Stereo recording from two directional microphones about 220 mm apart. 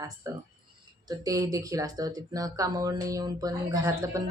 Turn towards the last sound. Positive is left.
turn(degrees=-15)  # may be behind; listen again after turning